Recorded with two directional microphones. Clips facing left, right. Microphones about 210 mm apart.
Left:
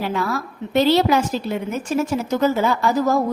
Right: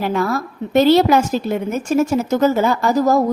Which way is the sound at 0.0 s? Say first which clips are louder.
Right 4 dB; 45° right (ahead or behind).